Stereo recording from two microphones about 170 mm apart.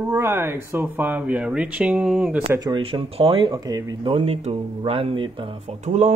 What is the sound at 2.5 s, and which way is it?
Speech, 25° right (ahead or behind).